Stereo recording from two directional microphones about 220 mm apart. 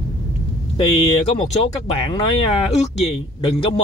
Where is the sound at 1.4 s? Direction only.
25° left (ahead or behind).